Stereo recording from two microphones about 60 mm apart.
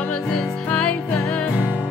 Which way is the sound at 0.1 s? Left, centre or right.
Centre.